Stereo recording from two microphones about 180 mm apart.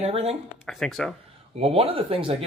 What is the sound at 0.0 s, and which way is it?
Speech, 35° right (ahead or behind).